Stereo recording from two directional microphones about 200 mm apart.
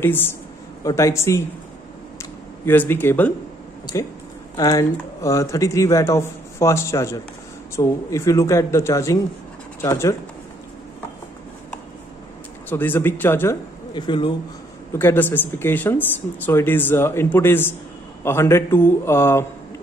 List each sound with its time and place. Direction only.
0.0 s speech: 10° left (ahead or behind)
2.6 s speech: 10° left (ahead or behind)
4.6 s speech: 15° left (ahead or behind)
12.6 s speech: 10° left (ahead or behind)
13.9 s a man's voice: 25° left (ahead or behind)
14.9 s speech: 10° left (ahead or behind)